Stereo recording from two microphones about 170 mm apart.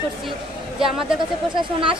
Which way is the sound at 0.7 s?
5° right (ahead or behind).